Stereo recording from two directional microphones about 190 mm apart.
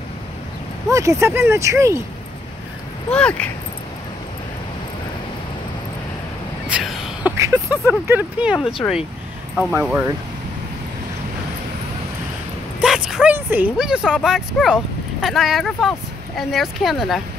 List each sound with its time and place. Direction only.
0.8 s speech: 15° right (ahead or behind)
3.1 s speech: 5° left (ahead or behind)
6.7 s a sound: centre (ahead or behind)
7.3 s speech: 10° right (ahead or behind)
8.8 s speech: 5° left (ahead or behind)
9.8 s speech: 10° right (ahead or behind)
12.8 s speech: centre (ahead or behind)